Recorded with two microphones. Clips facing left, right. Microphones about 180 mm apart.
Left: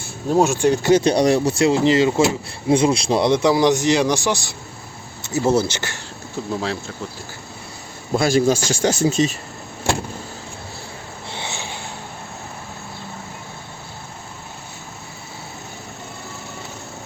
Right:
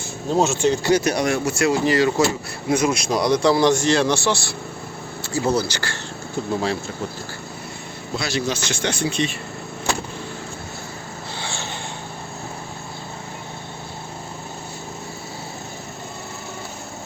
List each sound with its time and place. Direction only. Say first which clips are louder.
0.3 s a man's voice: left 2 dB; 15° left (ahead or behind)
8.1 s a man's voice: left 8 dB; 50° left (ahead or behind)
11.3 s a sound: left 1 dB; 20° left (ahead or behind)